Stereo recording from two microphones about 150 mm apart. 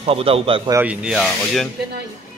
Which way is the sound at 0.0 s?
40° right (ahead or behind).